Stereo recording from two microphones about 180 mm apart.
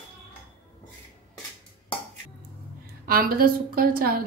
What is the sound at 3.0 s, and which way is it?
A woman's voice, 55° right (ahead or behind).